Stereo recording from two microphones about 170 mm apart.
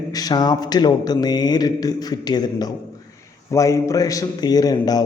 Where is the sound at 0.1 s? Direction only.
25° left (ahead or behind).